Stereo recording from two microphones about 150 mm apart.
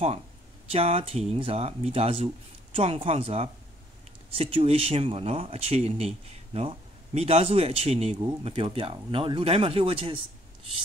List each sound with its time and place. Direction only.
0.7 s speech: 40° right (ahead or behind)